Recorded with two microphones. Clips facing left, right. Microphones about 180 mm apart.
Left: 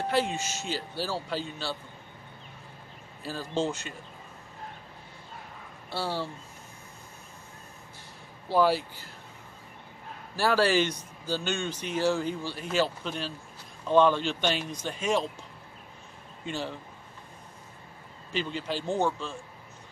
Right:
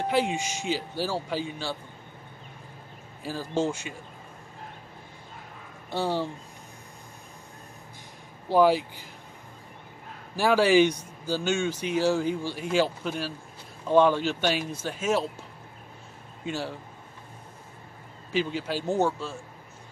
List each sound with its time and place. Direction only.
0.1 s speech: 15° right (ahead or behind)
3.3 s speech: 10° right (ahead or behind)
6.0 s speech: 15° right (ahead or behind)
8.5 s speech: 15° right (ahead or behind)
10.3 s speech: 15° right (ahead or behind)
16.4 s speech: 10° right (ahead or behind)
18.3 s speech: 10° right (ahead or behind)